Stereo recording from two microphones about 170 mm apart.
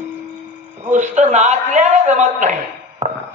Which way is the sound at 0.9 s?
45° right (ahead or behind).